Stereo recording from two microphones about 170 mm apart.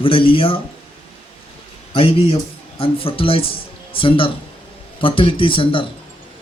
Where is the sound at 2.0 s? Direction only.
35° left (ahead or behind).